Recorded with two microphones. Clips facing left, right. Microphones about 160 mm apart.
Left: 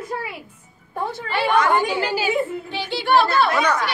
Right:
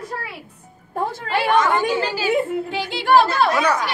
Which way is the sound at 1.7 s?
15° left (ahead or behind).